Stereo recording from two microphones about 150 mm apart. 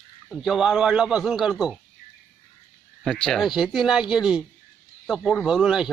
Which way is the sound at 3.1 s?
5° left (ahead or behind).